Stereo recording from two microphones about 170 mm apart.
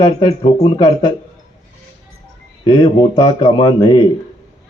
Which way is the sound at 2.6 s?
25° left (ahead or behind).